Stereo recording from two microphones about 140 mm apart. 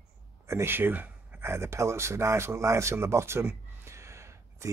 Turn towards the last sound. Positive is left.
turn(degrees=-20)  # may be behind; listen again after turning